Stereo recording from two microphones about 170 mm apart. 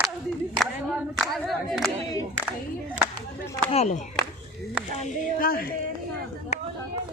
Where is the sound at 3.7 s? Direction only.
45° left (ahead or behind).